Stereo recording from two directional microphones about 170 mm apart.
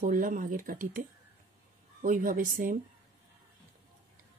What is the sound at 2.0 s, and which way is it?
Speech, 50° right (ahead or behind).